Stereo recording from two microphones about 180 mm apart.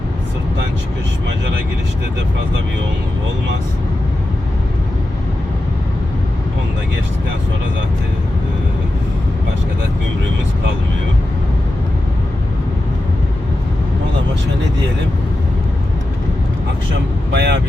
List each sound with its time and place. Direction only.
17.3 s speech: 70° right (ahead or behind)